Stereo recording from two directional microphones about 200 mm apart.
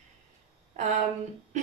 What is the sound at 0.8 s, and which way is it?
Speech, 35° right (ahead or behind).